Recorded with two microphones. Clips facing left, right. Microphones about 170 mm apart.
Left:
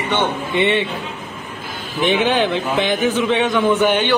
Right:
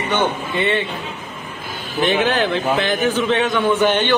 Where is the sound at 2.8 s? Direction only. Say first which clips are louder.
Left 1 dB; 10° left (ahead or behind).